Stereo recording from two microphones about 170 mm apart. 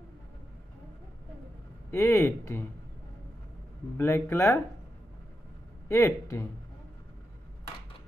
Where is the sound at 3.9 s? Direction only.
15° left (ahead or behind).